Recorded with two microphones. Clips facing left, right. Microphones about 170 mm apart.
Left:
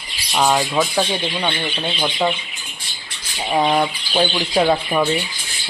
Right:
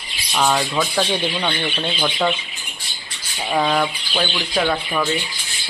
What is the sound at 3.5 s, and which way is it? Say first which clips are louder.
Speech: left 2 dB; 20° left (ahead or behind).